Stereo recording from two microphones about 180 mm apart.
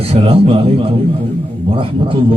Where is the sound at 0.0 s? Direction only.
35° right (ahead or behind).